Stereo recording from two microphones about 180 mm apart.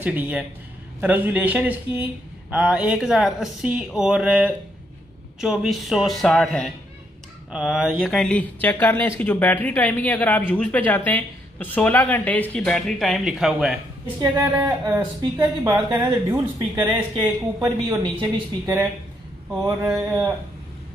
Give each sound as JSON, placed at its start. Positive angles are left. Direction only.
{"t": 0.0, "sound": "speech", "side_deg": -10}
{"t": 17.1, "sound": "speech", "side_deg": -25}
{"t": 20.0, "sound": "speech", "side_deg": -15}